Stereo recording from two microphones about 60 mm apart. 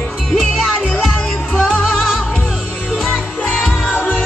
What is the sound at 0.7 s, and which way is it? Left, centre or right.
Music, centre.